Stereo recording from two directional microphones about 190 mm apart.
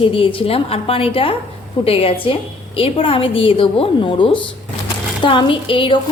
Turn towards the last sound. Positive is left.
turn(degrees=25)  # may be behind; listen again after turning